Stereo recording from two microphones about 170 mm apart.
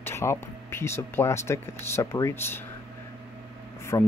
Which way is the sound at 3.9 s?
20° left (ahead or behind).